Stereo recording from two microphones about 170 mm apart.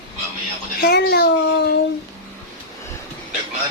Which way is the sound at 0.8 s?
70° left (ahead or behind).